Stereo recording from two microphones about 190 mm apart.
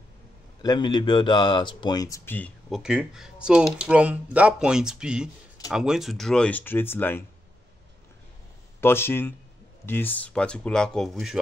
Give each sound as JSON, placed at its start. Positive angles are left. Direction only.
{"t": 0.6, "sound": "speech", "side_deg": 20}
{"t": 2.8, "sound": "speech", "side_deg": -5}
{"t": 8.8, "sound": "speech", "side_deg": 10}